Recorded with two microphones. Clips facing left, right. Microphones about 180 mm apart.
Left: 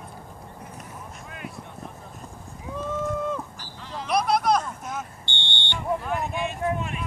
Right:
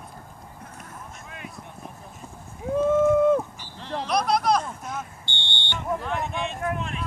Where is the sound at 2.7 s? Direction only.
50° right (ahead or behind).